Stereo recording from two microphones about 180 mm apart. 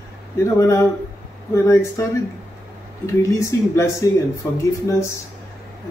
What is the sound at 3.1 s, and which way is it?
Speech, 15° left (ahead or behind).